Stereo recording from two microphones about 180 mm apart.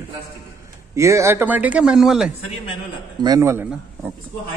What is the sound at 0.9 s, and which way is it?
Speech, 15° right (ahead or behind).